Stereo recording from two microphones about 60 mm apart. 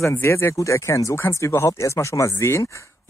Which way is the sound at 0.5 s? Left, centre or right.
Left.